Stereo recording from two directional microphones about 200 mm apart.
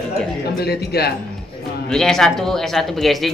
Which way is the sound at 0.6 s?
50° left (ahead or behind).